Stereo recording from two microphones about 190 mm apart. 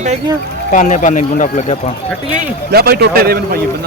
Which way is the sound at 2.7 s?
55° right (ahead or behind).